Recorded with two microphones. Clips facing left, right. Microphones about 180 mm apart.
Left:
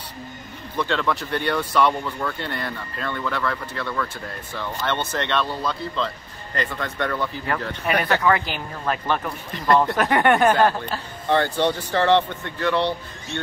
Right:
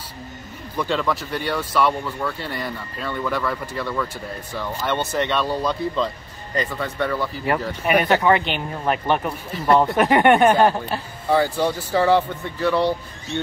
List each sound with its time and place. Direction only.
0.7 s speech: 10° right (ahead or behind)